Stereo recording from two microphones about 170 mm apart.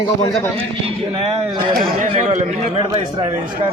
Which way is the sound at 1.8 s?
50° right (ahead or behind).